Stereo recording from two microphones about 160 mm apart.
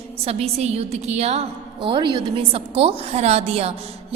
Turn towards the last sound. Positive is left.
turn(degrees=-40)  # may be behind; listen again after turning